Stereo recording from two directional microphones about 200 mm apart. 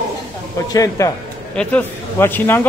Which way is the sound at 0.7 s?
15° left (ahead or behind).